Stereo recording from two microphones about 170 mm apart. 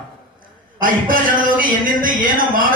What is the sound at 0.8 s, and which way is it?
A man's voice, 55° right (ahead or behind).